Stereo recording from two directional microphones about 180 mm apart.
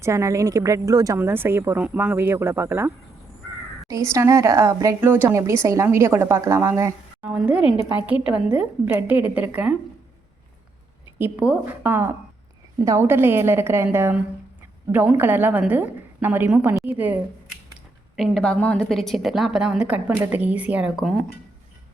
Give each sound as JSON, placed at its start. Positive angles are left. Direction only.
{"t": 0.0, "sound": "speech", "side_deg": -15}
{"t": 4.1, "sound": "speech", "side_deg": -15}
{"t": 7.3, "sound": "a woman's voice", "side_deg": -5}
{"t": 11.2, "sound": "speech", "side_deg": -10}
{"t": 15.2, "sound": "speech", "side_deg": -10}
{"t": 18.2, "sound": "a woman's voice", "side_deg": 5}